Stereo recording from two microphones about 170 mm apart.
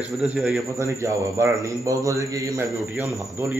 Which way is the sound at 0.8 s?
20° right (ahead or behind).